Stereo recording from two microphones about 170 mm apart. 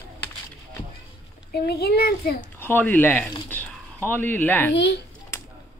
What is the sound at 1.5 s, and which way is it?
Speech, 65° left (ahead or behind).